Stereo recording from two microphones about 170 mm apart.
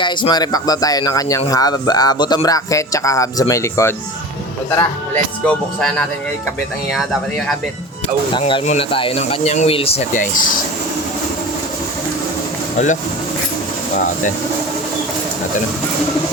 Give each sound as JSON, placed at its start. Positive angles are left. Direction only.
{"t": 0.0, "sound": "speech", "side_deg": 25}
{"t": 8.3, "sound": "speech", "side_deg": 30}
{"t": 10.2, "sound": "speech", "side_deg": 50}